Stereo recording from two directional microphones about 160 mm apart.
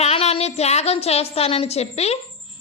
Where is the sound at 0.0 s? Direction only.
40° left (ahead or behind).